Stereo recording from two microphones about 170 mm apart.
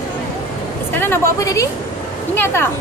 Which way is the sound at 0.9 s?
15° left (ahead or behind).